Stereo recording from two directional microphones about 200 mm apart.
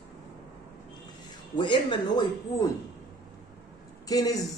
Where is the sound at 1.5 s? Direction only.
25° left (ahead or behind).